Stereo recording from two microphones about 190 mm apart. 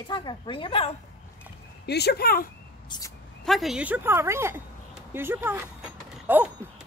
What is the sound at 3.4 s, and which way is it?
A woman's voice, centre (ahead or behind).